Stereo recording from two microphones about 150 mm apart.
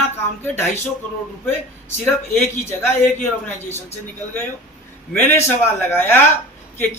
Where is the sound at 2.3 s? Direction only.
15° left (ahead or behind).